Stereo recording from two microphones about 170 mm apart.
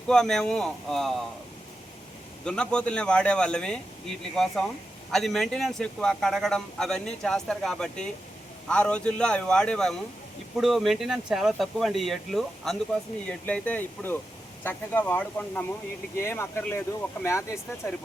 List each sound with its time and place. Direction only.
0.1 s a man's voice: 5° left (ahead or behind)
2.4 s a man's voice: 5° left (ahead or behind)